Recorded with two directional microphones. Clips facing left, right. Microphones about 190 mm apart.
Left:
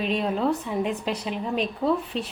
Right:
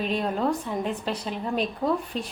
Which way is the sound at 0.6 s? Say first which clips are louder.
Left 2 dB; 5° left (ahead or behind).